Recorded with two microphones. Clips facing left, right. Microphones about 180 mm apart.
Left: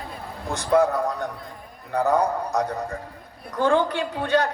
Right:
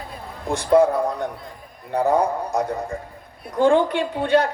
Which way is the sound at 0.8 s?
30° right (ahead or behind).